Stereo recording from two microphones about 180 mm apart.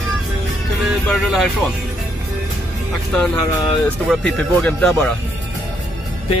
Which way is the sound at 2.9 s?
5° left (ahead or behind).